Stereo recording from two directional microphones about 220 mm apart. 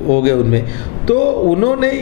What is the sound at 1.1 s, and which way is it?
Speech, 35° left (ahead or behind).